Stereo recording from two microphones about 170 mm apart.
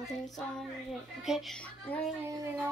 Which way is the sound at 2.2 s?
20° right (ahead or behind).